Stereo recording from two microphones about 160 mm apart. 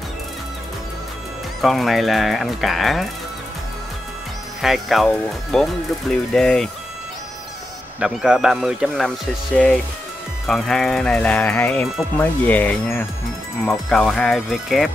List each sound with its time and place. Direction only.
1.6 s speech: centre (ahead or behind)
4.6 s speech: centre (ahead or behind)
8.0 s speech: 5° right (ahead or behind)
10.4 s speech: centre (ahead or behind)